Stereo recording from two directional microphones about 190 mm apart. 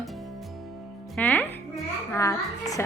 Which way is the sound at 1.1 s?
10° left (ahead or behind).